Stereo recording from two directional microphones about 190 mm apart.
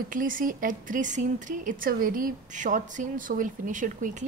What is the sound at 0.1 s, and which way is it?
Speech, 45° right (ahead or behind).